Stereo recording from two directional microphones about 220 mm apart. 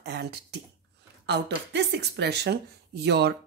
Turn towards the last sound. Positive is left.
turn(degrees=-50)  # may be behind; listen again after turning